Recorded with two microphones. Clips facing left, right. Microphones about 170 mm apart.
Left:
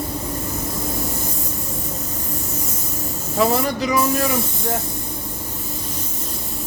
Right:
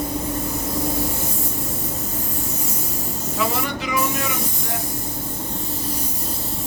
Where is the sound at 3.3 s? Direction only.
40° left (ahead or behind).